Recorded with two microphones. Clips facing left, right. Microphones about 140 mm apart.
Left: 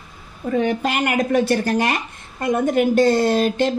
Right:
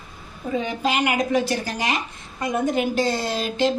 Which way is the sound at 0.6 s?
55° left (ahead or behind).